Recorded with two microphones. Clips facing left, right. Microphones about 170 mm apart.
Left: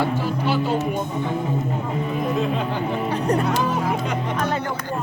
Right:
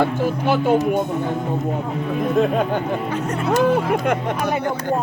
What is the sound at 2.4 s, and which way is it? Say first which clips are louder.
Speech: right 5 dB; 55° right (ahead or behind).